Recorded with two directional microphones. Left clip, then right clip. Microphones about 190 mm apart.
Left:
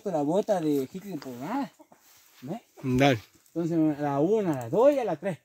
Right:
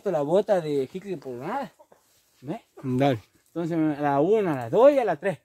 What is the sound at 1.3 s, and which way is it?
Speech, 50° right (ahead or behind).